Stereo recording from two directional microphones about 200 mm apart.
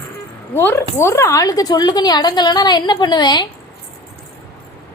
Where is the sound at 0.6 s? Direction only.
10° left (ahead or behind).